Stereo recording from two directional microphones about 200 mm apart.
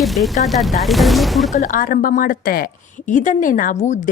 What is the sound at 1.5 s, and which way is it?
Speech, 40° left (ahead or behind).